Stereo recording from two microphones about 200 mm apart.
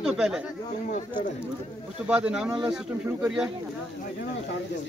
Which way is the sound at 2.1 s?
5° right (ahead or behind).